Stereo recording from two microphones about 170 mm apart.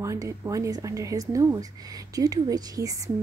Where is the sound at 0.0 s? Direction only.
15° right (ahead or behind).